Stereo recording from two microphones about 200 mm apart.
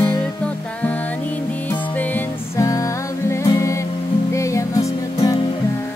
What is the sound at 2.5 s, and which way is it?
Music, 15° left (ahead or behind).